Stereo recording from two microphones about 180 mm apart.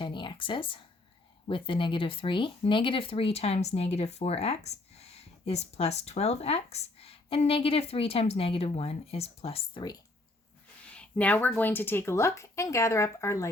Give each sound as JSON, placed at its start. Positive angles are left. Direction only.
{"t": 0.0, "sound": "a sound", "side_deg": 25}
{"t": 1.5, "sound": "speech", "side_deg": 30}
{"t": 10.9, "sound": "speech", "side_deg": 5}